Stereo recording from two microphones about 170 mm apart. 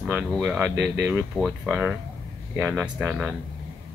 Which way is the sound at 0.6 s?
10° right (ahead or behind).